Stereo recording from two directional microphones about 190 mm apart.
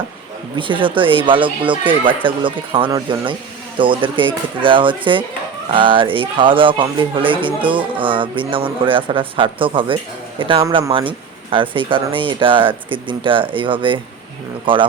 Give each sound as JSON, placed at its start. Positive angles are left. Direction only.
{"t": 0.5, "sound": "speech", "side_deg": -25}